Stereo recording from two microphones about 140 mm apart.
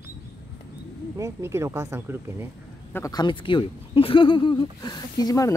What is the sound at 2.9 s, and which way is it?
Speech, 25° left (ahead or behind).